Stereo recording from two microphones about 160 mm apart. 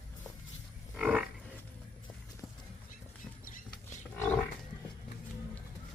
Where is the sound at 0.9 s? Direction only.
5° right (ahead or behind).